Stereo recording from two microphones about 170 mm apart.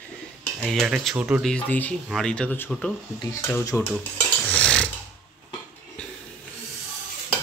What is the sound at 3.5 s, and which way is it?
Speech, 15° left (ahead or behind).